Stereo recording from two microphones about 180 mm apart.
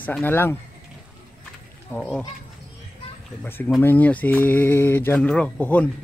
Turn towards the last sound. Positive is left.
turn(degrees=10)  # may be behind; listen again after turning